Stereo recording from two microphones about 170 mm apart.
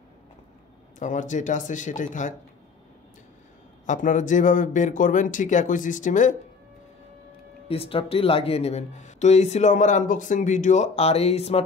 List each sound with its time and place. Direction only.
0.9 s speech: 45° left (ahead or behind)
3.8 s speech: 45° left (ahead or behind)
7.6 s speech: 35° left (ahead or behind)